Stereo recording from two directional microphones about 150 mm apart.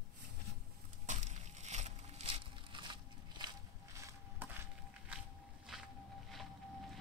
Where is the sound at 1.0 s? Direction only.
50° right (ahead or behind); by 3.5 s 30° right (ahead or behind).